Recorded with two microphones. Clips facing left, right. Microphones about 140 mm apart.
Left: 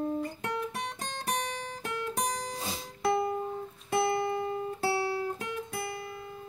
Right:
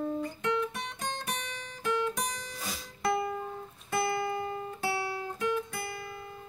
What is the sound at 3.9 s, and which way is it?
Guitar, 30° left (ahead or behind).